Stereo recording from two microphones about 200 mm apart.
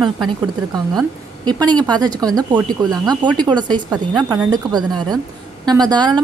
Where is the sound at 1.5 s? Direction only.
20° right (ahead or behind).